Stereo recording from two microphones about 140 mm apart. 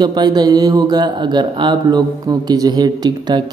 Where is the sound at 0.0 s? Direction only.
30° right (ahead or behind).